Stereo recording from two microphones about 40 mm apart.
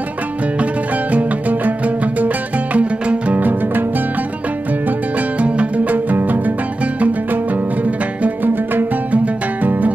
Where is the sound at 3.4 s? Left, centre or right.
Right.